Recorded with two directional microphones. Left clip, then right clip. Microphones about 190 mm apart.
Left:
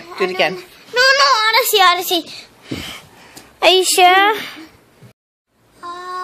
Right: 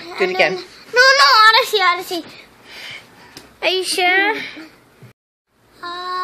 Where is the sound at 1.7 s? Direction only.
40° left (ahead or behind).